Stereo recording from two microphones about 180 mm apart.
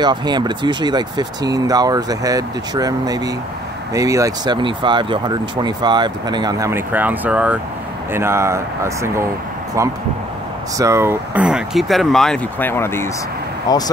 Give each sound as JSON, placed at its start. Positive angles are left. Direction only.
{"t": 0.0, "sound": "speech", "side_deg": -25}
{"t": 10.8, "sound": "speech", "side_deg": -15}